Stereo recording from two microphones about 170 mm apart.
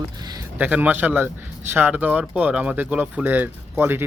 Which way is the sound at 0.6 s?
10° right (ahead or behind).